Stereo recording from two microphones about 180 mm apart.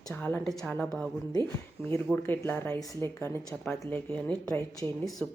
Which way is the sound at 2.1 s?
10° left (ahead or behind).